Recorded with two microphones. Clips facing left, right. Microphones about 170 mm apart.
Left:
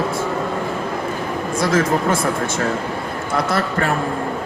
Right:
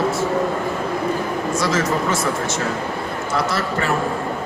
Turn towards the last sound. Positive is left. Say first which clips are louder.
# left 2 dB
turn(degrees=55)  # may be behind; listen again after turning